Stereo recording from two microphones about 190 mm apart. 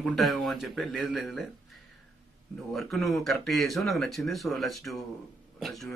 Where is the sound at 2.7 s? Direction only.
Centre (ahead or behind).